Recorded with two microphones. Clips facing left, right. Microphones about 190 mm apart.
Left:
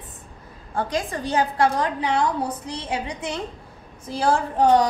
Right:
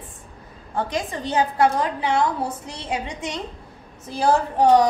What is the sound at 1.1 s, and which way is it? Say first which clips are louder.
A woman's voice: right 1 dB; 20° right (ahead or behind).